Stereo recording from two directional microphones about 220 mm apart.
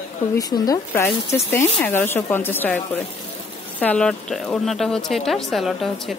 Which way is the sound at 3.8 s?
5° left (ahead or behind).